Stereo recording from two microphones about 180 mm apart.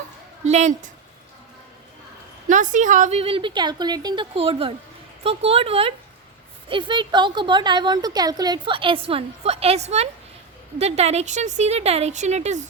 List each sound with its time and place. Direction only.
0.4 s a woman's voice: 40° right (ahead or behind)
2.5 s a woman's voice: 45° right (ahead or behind)